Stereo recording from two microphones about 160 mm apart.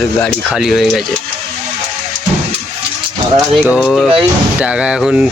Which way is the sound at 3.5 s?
10° right (ahead or behind).